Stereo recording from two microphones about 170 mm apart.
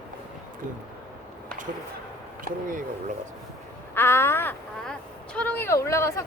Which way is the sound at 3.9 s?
15° left (ahead or behind).